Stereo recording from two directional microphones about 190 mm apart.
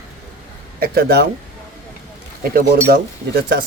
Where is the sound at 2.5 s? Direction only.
55° right (ahead or behind).